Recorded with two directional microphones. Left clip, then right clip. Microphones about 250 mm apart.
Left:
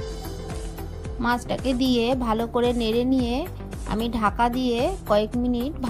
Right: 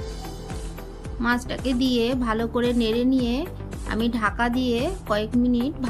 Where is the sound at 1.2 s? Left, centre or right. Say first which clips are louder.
Left 1 dB; left.